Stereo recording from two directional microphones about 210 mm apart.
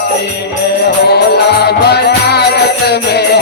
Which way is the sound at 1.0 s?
50° left (ahead or behind).